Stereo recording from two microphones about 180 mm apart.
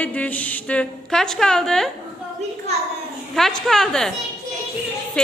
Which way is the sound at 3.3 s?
Centre (ahead or behind).